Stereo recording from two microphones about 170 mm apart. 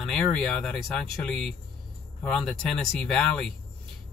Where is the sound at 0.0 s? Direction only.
5° left (ahead or behind).